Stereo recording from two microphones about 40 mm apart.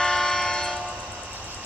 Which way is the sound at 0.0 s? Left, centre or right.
Centre.